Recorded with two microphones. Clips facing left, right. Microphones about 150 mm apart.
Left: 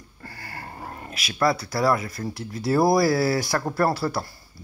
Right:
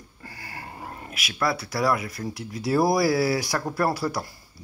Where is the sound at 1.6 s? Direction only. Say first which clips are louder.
Left 2 dB; 30° left (ahead or behind).